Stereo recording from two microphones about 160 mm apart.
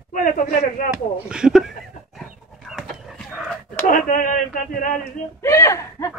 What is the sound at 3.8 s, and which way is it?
Speech, 55° left (ahead or behind).